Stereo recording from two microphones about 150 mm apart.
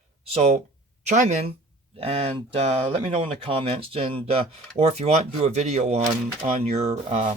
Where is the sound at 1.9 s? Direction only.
40° right (ahead or behind).